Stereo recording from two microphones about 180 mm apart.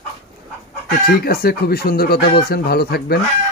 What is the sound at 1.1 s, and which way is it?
Speech, 60° left (ahead or behind).